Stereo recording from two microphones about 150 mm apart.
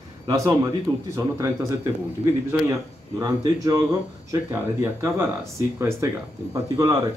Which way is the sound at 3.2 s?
25° right (ahead or behind).